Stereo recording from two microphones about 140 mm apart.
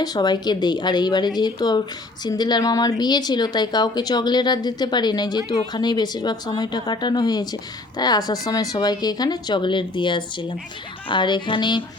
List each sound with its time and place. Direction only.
0.0 s speech: 30° left (ahead or behind)